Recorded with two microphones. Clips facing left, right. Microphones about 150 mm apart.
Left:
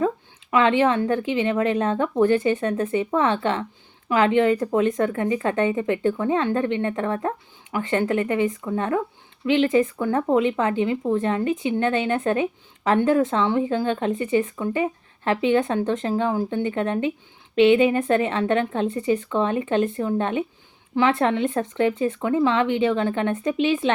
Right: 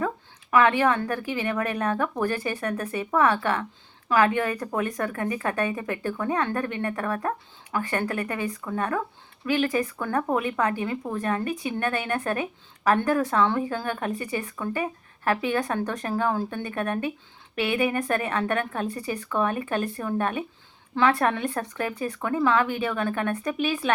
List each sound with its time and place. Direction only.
0.5 s speech: 25° left (ahead or behind)